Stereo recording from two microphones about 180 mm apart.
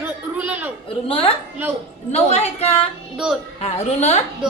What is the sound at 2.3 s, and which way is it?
A woman's voice, 35° left (ahead or behind).